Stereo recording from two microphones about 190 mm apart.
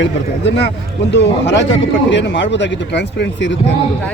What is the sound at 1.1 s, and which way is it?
Speech, 65° left (ahead or behind).